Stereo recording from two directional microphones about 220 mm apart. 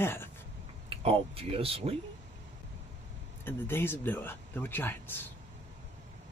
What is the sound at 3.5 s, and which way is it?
Speech, 10° left (ahead or behind).